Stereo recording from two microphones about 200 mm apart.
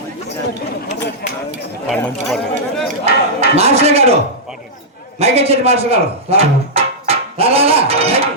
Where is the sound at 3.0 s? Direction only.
30° right (ahead or behind).